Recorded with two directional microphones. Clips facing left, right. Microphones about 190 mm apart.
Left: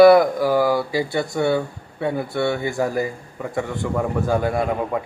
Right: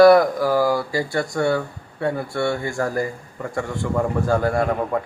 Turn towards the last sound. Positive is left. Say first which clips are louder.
# right 1 dB
turn(degrees=10)  # may be behind; listen again after turning